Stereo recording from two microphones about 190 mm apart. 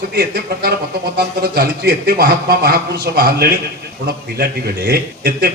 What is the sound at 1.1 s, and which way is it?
A man's voice, 55° right (ahead or behind).